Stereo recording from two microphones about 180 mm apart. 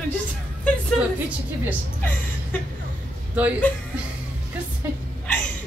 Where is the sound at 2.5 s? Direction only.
10° left (ahead or behind).